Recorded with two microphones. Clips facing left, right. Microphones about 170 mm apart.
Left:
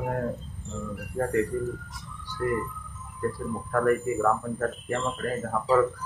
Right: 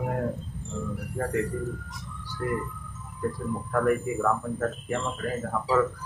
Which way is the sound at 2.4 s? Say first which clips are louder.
Left 2 dB; centre (ahead or behind).